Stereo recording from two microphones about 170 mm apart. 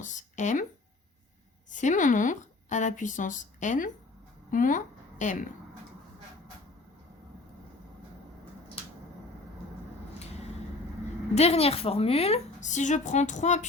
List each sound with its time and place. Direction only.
0.0 s speech: 45° left (ahead or behind)
1.7 s speech: 50° left (ahead or behind)
11.3 s a woman's voice: 35° left (ahead or behind)